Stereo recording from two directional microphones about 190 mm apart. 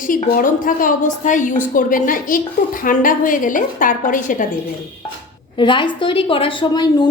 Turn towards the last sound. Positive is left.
turn(degrees=20)  # may be behind; listen again after turning